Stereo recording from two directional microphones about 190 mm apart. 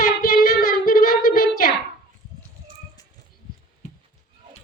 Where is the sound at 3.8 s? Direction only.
40° left (ahead or behind).